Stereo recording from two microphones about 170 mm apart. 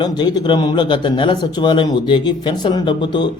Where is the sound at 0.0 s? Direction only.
25° left (ahead or behind).